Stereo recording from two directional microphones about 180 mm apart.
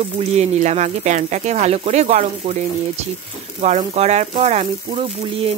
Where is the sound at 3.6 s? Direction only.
40° right (ahead or behind).